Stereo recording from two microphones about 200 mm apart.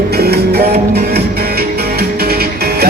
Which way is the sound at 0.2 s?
50° right (ahead or behind).